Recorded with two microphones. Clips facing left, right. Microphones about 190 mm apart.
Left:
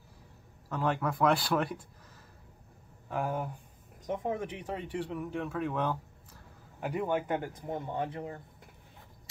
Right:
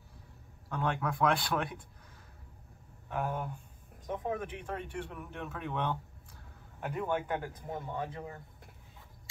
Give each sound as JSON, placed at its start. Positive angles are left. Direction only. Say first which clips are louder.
{"t": 0.7, "sound": "speech", "louder": "left 2 dB", "side_deg": 5}
{"t": 3.1, "sound": "speech", "louder": "left 2 dB", "side_deg": 10}
{"t": 4.1, "sound": "speech", "louder": "left 2 dB", "side_deg": 20}
{"t": 5.1, "sound": "speech", "louder": "left 7 dB", "side_deg": 5}
{"t": 7.7, "sound": "speech", "louder": "left 4 dB", "side_deg": 25}